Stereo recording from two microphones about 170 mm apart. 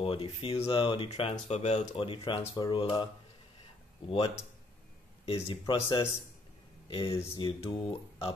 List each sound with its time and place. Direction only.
0.0 s speech: 30° left (ahead or behind)
5.2 s speech: 30° left (ahead or behind)